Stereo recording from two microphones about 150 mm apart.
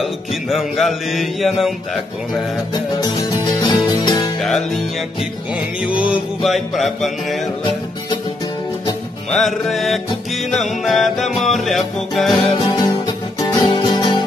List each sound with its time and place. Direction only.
0.0 s music: centre (ahead or behind)
2.7 s music: 25° left (ahead or behind)
4.4 s music: centre (ahead or behind)
6.1 s music: centre (ahead or behind)
9.3 s music: centre (ahead or behind)
12.5 s music: 25° left (ahead or behind)